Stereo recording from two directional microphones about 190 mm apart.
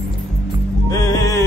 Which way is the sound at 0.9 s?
20° left (ahead or behind).